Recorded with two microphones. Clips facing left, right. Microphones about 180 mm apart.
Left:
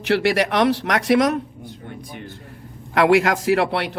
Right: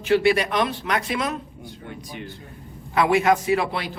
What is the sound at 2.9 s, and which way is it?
A man's voice, 90° left.